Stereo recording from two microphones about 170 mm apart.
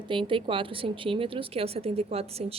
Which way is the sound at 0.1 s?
30° right (ahead or behind).